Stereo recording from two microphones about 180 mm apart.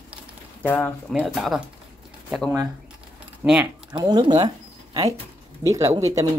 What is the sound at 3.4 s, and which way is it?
Speech, 10° right (ahead or behind).